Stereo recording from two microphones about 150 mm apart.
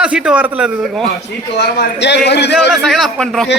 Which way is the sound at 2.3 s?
90° left.